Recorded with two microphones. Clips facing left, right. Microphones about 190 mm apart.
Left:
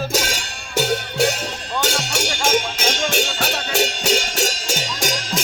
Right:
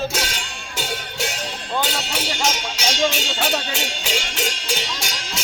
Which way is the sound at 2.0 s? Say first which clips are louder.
Left 1 dB; 50° left (ahead or behind).